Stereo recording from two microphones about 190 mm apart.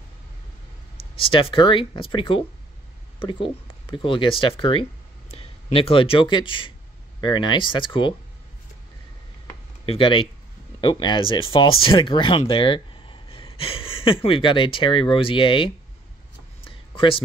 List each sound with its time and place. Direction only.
1.2 s speech: 30° left (ahead or behind)
9.8 s speech: 25° left (ahead or behind)
16.6 s a sound: 30° left (ahead or behind)